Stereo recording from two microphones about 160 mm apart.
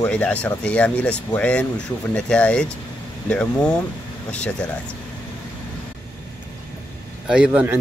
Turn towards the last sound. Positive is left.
turn(degrees=-10)  # may be behind; listen again after turning